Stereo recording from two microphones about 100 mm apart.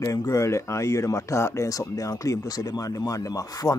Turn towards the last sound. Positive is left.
turn(degrees=35)  # may be behind; listen again after turning